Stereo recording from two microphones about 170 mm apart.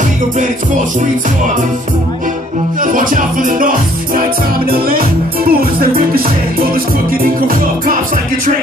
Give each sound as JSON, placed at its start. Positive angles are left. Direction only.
{"t": 2.8, "sound": "music", "side_deg": -50}